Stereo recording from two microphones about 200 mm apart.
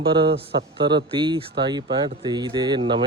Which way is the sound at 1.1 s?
25° right (ahead or behind).